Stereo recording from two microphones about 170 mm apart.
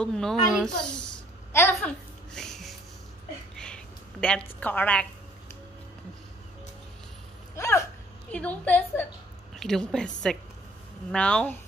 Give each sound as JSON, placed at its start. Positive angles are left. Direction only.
{"t": 0.0, "sound": "a woman's voice", "side_deg": 5}
{"t": 2.3, "sound": "music", "side_deg": 5}
{"t": 3.5, "sound": "a sound", "side_deg": 5}
{"t": 4.6, "sound": "a woman's voice", "side_deg": 10}
{"t": 7.5, "sound": "a sound", "side_deg": 15}
{"t": 8.3, "sound": "a woman's voice", "side_deg": 10}